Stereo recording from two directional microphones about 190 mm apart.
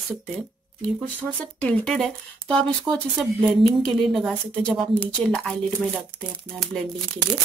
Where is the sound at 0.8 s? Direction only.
5° left (ahead or behind).